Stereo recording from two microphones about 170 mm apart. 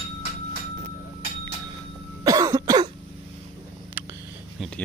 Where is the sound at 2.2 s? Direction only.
20° right (ahead or behind).